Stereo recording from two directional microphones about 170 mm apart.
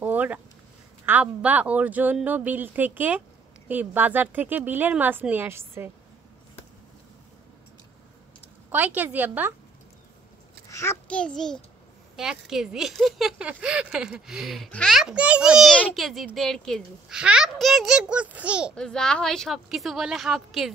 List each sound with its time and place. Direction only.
0.0 s a sound: 10° right (ahead or behind)
1.0 s speech: 10° right (ahead or behind)
8.6 s speech: 10° right (ahead or behind)
10.7 s a child's voice: 15° left (ahead or behind); by 18.7 s 5° right (ahead or behind)
18.8 s speech: 5° left (ahead or behind)